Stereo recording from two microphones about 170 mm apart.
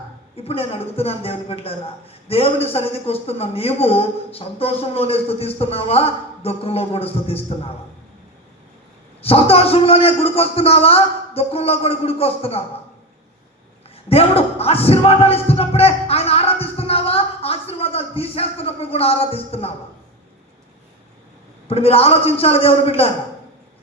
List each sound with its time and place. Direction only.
0.3 s a man's voice: 35° left (ahead or behind)
9.2 s a man's voice: 35° left (ahead or behind)
14.1 s a sound: 35° left (ahead or behind)
21.7 s a man's voice: 35° left (ahead or behind)